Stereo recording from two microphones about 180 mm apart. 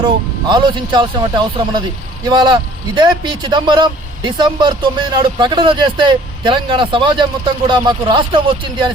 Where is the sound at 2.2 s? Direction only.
25° right (ahead or behind).